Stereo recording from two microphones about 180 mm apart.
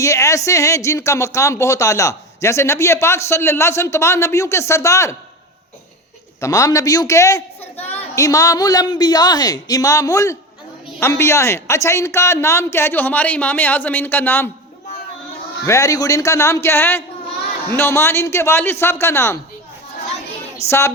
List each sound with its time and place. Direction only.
0.0 s speech: 15° left (ahead or behind)
6.4 s a man's voice: 20° left (ahead or behind)
15.6 s speech: 15° left (ahead or behind)
20.7 s speech: 15° left (ahead or behind)